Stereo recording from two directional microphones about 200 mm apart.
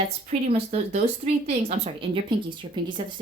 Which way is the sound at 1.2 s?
30° right (ahead or behind).